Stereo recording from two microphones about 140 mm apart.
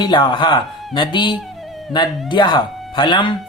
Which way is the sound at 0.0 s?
35° left (ahead or behind).